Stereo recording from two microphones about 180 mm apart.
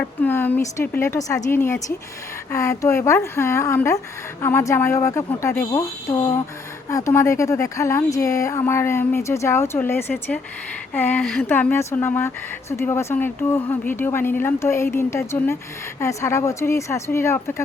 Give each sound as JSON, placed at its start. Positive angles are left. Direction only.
{"t": 0.0, "sound": "speech", "side_deg": 10}